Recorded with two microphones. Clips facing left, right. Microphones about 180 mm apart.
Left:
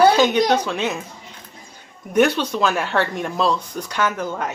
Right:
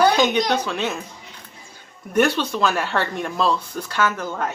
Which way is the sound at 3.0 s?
10° left (ahead or behind).